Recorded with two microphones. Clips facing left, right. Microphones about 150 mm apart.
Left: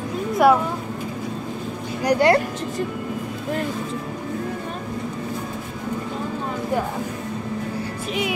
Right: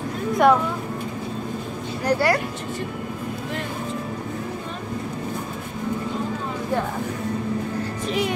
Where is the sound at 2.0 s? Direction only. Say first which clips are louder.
Left 3 dB; 15° left (ahead or behind).